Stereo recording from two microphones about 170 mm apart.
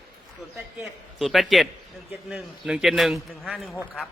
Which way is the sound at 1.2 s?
Centre (ahead or behind).